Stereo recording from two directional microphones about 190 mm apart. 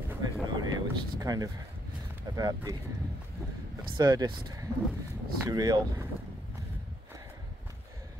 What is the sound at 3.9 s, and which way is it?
Speech, 20° right (ahead or behind).